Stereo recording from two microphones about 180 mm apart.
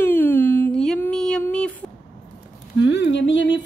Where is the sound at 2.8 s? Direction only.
85° left.